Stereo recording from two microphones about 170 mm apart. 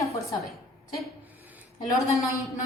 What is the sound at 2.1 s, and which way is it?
Speech, 20° left (ahead or behind).